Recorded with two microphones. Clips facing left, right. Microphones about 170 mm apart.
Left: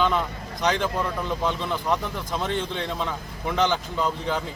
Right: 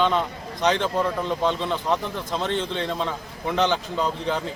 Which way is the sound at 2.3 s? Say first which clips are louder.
Right 2 dB; 5° left (ahead or behind).